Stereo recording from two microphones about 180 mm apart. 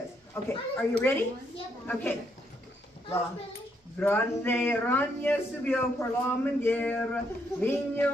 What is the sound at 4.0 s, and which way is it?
Speech, 10° left (ahead or behind).